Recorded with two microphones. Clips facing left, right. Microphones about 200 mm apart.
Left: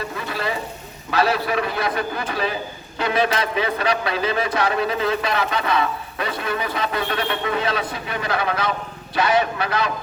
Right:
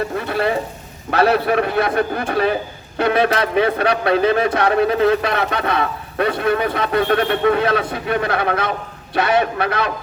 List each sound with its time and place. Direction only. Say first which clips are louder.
0.2 s stir: right 6 dB; 55° right (ahead or behind)
1.1 s a man's voice: right 5 dB; 55° right (ahead or behind)